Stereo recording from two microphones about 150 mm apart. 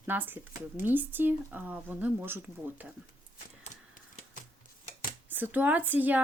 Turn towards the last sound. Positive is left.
turn(degrees=-10)  # may be behind; listen again after turning